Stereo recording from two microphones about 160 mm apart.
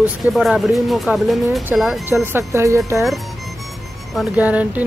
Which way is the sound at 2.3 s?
15° right (ahead or behind).